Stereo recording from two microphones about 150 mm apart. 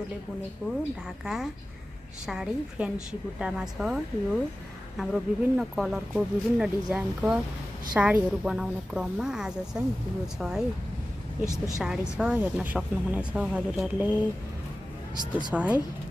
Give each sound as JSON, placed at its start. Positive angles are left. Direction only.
{"t": 1.2, "sound": "a woman's voice", "side_deg": -5}
{"t": 11.4, "sound": "a woman's voice", "side_deg": 20}
{"t": 11.8, "sound": "a woman's voice", "side_deg": -5}
{"t": 15.3, "sound": "a woman's voice", "side_deg": -10}